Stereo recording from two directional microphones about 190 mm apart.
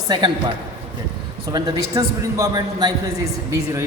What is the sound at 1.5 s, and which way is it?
A man's voice, 20° right (ahead or behind).